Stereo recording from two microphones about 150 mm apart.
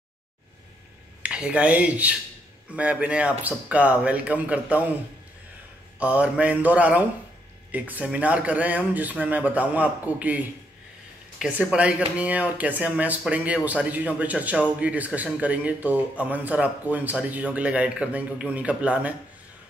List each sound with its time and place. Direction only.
1.2 s a man's voice: 10° right (ahead or behind)
5.9 s a man's voice: 10° right (ahead or behind)